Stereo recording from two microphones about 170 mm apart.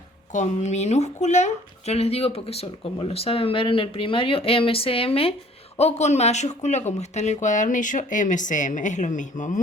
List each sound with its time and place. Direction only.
0.3 s speech: 40° left (ahead or behind)